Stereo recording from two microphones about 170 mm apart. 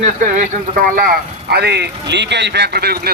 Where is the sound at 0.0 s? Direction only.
50° right (ahead or behind).